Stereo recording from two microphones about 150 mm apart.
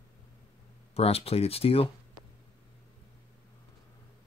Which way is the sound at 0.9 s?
40° left (ahead or behind).